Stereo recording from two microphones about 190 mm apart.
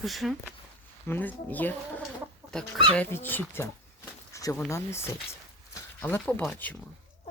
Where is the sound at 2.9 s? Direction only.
10° left (ahead or behind).